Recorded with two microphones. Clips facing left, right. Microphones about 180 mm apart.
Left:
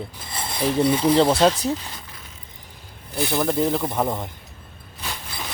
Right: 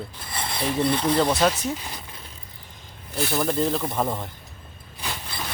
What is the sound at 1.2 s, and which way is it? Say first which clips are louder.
Speech: left 4 dB; 30° left (ahead or behind).